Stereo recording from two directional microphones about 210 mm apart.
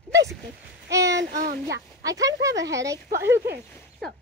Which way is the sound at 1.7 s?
15° right (ahead or behind).